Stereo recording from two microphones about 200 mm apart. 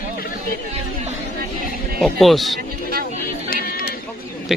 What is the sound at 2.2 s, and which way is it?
Speech, centre (ahead or behind).